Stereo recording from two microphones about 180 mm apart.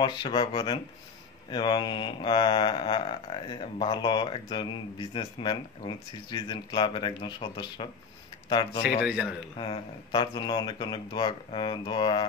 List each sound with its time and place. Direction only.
0.0 s speech: 25° left (ahead or behind)
9.0 s a man's voice: 5° right (ahead or behind)
9.6 s speech: 25° left (ahead or behind)